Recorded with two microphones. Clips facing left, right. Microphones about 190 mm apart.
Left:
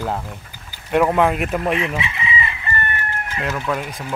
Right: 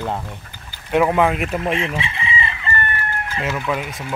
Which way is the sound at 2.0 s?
30° right (ahead or behind).